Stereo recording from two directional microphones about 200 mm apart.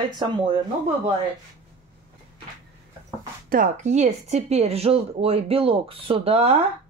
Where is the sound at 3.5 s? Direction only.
40° right (ahead or behind).